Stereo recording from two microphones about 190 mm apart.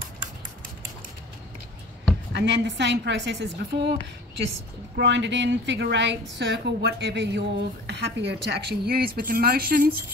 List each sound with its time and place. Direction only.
2.3 s a woman's voice: 70° right (ahead or behind)
4.9 s a woman's voice: 70° right (ahead or behind); by 10.0 s 50° right (ahead or behind)